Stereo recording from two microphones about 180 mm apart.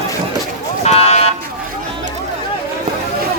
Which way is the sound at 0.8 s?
35° left (ahead or behind).